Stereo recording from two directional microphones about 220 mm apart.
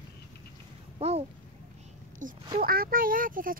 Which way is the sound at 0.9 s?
30° right (ahead or behind).